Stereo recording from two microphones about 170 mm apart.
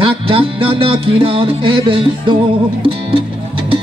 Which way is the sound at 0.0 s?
30° right (ahead or behind).